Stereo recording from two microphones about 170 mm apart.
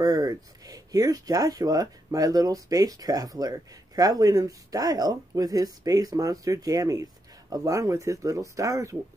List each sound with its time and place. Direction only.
0.0 s speech: 20° right (ahead or behind)